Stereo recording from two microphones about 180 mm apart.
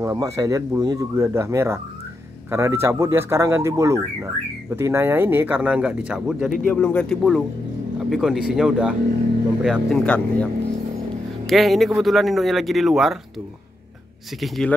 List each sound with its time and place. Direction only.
0.0 s speech: 20° right (ahead or behind)
6.6 s speech: 10° left (ahead or behind)
14.4 s speech: centre (ahead or behind)